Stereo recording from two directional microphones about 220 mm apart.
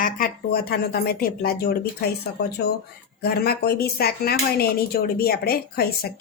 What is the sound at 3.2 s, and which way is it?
Speech, 45° left (ahead or behind).